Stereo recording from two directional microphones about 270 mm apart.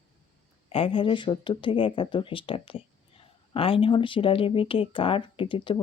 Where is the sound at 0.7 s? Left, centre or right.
Centre.